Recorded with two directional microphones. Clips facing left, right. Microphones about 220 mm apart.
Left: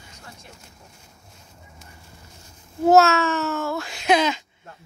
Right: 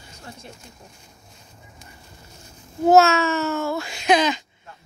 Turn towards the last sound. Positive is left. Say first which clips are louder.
# right 1 dB
turn(degrees=5)  # may be behind; listen again after turning